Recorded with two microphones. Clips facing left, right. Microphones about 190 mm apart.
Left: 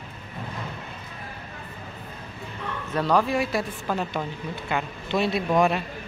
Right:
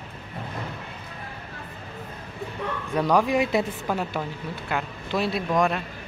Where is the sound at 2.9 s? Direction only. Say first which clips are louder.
Right 1 dB; 15° right (ahead or behind); by 5.8 s 5° left (ahead or behind).